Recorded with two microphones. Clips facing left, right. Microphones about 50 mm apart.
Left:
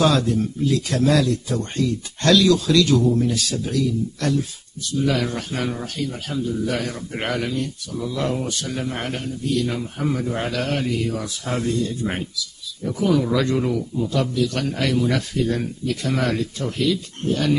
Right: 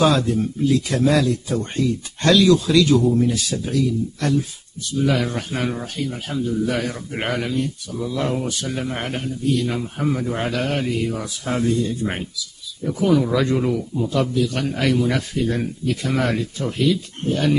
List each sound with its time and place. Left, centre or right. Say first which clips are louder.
0.0 s speech: right 1 dB; centre
8.6 s speech: right 1 dB; centre
12.8 s speech: right 2 dB; centre